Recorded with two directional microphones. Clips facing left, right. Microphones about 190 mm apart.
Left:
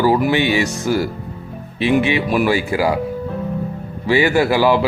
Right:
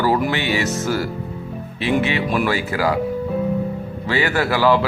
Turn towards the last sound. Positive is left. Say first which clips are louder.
# left 3 dB
turn(degrees=15)  # may be behind; listen again after turning